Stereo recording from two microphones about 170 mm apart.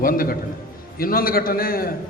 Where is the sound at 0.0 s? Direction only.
55° left (ahead or behind).